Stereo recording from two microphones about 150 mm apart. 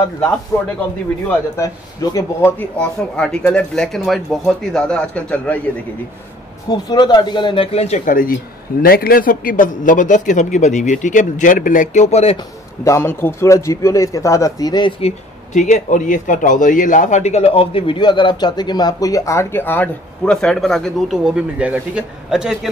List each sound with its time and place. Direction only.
0.5 s a man's voice: 20° left (ahead or behind)
2.1 s speech: 15° left (ahead or behind)
6.7 s speech: 30° left (ahead or behind); by 8.4 s 65° left (ahead or behind)
8.8 s a man's voice: 85° left; by 12.4 s 45° left (ahead or behind)
12.8 s a man's voice: 20° left (ahead or behind); by 15.1 s 35° left (ahead or behind)
15.5 s a man's voice: 55° left (ahead or behind); by 22.7 s 5° right (ahead or behind)